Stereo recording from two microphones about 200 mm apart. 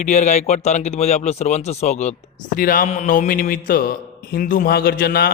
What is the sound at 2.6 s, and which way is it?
A man's voice, 45° left (ahead or behind).